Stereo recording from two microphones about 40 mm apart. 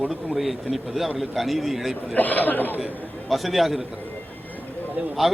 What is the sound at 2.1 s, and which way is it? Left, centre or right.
Speech, left.